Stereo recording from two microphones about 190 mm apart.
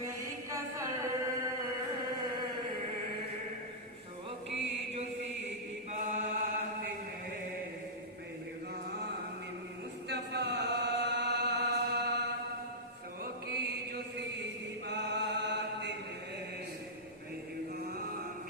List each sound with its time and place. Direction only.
0.0 s chant: 15° right (ahead or behind)
6.1 s chant: 40° right (ahead or behind)
10.1 s chant: 60° right (ahead or behind)
13.2 s chant: 55° right (ahead or behind)